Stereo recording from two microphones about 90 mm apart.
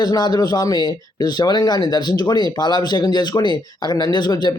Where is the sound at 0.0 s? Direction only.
45° left (ahead or behind).